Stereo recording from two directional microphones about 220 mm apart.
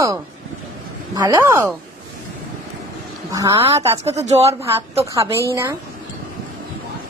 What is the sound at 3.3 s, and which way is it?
Speech, 15° right (ahead or behind).